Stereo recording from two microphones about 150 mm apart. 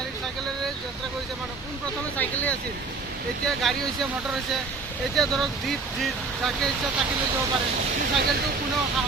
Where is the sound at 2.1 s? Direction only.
10° left (ahead or behind).